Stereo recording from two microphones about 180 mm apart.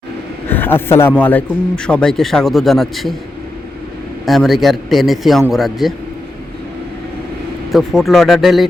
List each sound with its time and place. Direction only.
0.4 s a man's voice: 10° left (ahead or behind)
4.3 s a man's voice: centre (ahead or behind)
7.7 s a man's voice: centre (ahead or behind)